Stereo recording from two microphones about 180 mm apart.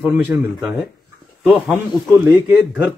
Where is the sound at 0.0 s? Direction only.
10° right (ahead or behind).